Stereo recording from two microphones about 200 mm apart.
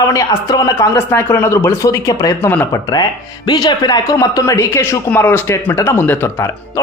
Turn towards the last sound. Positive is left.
turn(degrees=15)  # may be behind; listen again after turning